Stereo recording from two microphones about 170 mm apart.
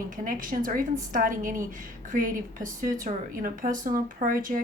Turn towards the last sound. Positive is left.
turn(degrees=-55)  # may be behind; listen again after turning